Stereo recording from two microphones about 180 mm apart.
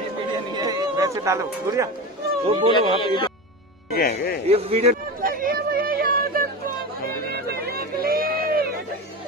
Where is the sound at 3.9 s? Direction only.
60° left (ahead or behind).